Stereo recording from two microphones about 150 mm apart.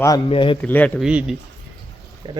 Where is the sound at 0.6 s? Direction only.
10° left (ahead or behind).